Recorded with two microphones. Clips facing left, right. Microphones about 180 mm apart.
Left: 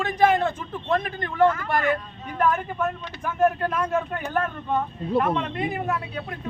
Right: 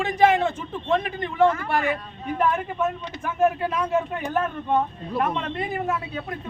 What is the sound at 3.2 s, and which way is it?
A man's voice, 5° right (ahead or behind).